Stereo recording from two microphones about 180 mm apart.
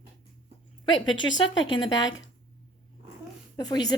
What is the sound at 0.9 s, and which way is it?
Speech, 90° left.